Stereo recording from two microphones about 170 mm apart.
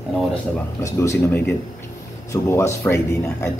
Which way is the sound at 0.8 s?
20° left (ahead or behind).